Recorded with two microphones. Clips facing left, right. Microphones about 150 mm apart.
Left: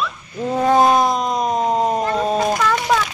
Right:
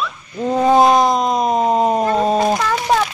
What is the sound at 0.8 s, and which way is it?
Speech, 5° left (ahead or behind).